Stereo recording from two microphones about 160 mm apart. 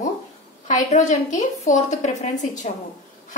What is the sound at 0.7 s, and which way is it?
A woman's voice, 50° left (ahead or behind).